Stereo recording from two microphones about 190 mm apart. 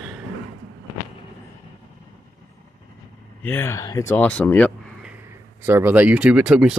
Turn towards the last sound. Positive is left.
turn(degrees=-5)  # may be behind; listen again after turning